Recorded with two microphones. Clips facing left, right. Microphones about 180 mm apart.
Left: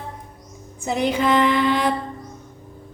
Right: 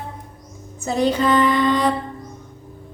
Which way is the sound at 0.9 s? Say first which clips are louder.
Right 2 dB; 15° left (ahead or behind).